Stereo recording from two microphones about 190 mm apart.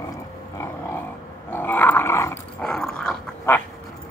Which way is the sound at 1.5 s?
10° left (ahead or behind).